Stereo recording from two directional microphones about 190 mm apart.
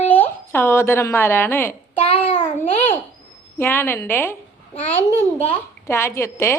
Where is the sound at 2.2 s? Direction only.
30° left (ahead or behind).